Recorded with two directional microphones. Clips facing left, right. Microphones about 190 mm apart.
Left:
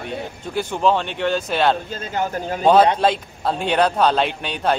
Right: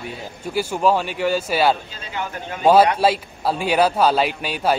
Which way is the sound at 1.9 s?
45° left (ahead or behind).